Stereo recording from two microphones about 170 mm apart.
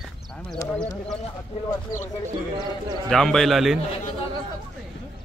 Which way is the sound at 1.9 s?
20° left (ahead or behind).